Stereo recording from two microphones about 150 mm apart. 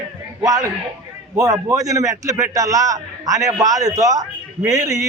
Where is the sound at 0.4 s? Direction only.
25° right (ahead or behind).